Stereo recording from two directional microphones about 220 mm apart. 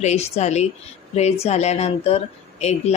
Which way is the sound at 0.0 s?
30° left (ahead or behind).